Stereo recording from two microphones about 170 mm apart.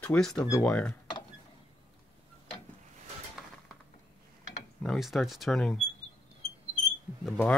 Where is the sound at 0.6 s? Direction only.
10° left (ahead or behind).